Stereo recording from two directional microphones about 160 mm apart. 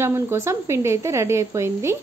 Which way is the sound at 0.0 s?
15° right (ahead or behind).